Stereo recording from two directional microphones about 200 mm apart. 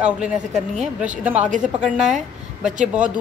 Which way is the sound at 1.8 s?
35° right (ahead or behind).